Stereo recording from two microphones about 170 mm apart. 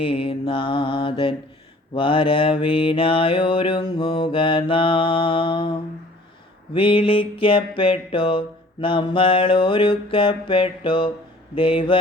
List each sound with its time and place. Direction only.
0.0 s mantra: 30° left (ahead or behind)